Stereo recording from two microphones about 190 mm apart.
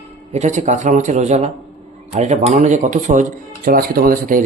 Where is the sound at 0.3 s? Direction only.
40° right (ahead or behind).